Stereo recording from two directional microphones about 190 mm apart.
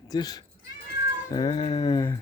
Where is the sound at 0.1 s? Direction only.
20° left (ahead or behind).